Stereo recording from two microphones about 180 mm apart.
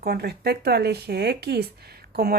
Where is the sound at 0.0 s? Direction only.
60° right (ahead or behind).